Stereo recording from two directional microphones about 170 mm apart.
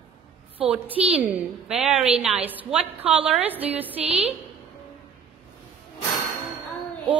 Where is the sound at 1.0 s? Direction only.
35° right (ahead or behind).